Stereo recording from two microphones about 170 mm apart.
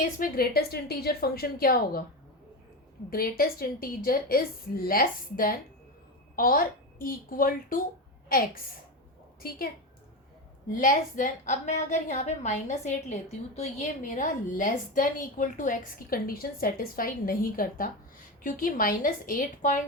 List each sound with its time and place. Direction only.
0.2 s a woman's voice: 65° left (ahead or behind)
3.1 s a woman's voice: 60° left (ahead or behind)
10.7 s a woman's voice: 50° left (ahead or behind)